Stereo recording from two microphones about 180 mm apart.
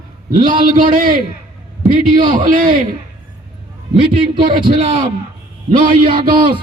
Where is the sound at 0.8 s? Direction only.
50° right (ahead or behind).